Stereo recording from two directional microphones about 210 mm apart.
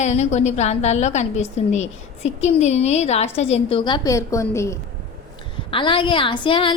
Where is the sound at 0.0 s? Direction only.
30° left (ahead or behind); by 4.8 s 15° left (ahead or behind).